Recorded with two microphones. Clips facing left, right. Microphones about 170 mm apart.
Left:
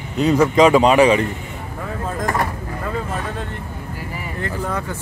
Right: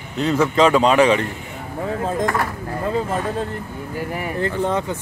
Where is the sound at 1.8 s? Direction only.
30° right (ahead or behind).